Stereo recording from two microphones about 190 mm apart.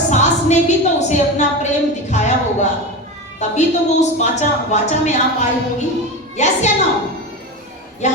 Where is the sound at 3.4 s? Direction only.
40° left (ahead or behind).